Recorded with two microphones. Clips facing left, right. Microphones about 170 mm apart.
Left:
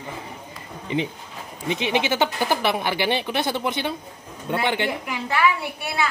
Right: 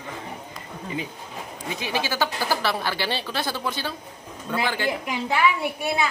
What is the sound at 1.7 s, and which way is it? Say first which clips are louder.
A woman's voice: left 5 dB; 20° left (ahead or behind).